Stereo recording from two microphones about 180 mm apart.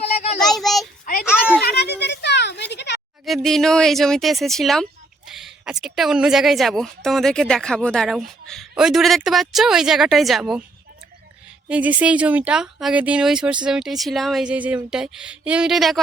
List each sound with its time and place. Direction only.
0.4 s child singing: centre (ahead or behind)
1.6 s a sound: 65° left (ahead or behind)
3.2 s speech: centre (ahead or behind)
11.7 s speech: 10° right (ahead or behind)